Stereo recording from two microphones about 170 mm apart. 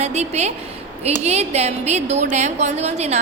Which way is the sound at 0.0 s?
40° right (ahead or behind).